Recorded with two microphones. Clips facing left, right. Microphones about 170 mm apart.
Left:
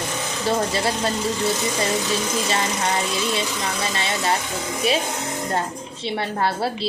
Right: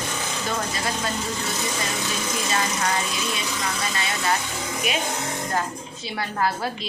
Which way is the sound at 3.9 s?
25° left (ahead or behind).